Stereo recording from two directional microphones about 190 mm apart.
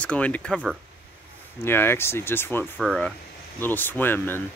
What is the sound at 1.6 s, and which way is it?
Speech, 10° left (ahead or behind).